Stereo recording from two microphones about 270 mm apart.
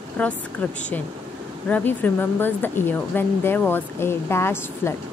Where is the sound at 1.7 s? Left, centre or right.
Centre.